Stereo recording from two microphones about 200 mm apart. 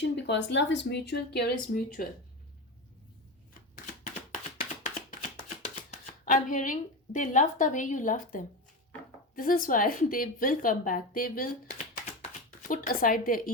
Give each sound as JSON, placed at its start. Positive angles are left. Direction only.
{"t": 0.0, "sound": "speech", "side_deg": 60}
{"t": 5.4, "sound": "a woman's voice", "side_deg": 35}